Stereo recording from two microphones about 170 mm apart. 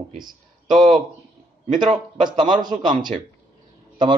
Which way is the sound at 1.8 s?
25° right (ahead or behind).